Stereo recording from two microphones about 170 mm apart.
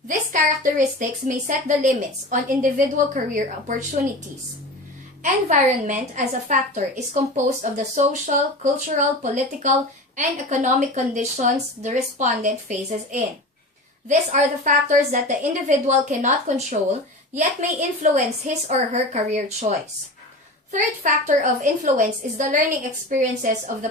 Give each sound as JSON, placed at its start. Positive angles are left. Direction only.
{"t": 1.5, "sound": "a woman's voice", "side_deg": -50}
{"t": 5.2, "sound": "a woman's voice", "side_deg": -45}